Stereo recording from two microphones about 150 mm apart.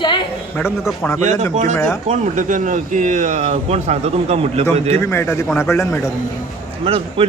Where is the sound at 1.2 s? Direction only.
50° right (ahead or behind).